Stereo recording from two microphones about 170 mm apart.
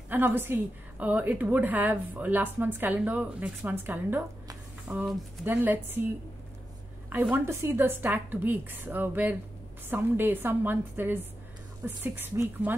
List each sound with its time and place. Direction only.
0.1 s a woman's voice: 15° right (ahead or behind)
7.1 s a woman's voice: 10° right (ahead or behind)